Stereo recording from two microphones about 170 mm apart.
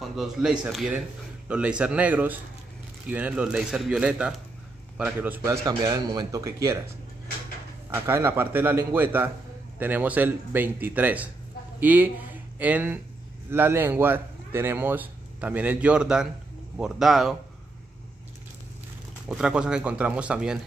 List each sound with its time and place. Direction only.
0.0 s a man's voice: centre (ahead or behind); by 6.8 s 20° right (ahead or behind)
7.9 s a man's voice: 15° right (ahead or behind)
19.2 s speech: 5° right (ahead or behind)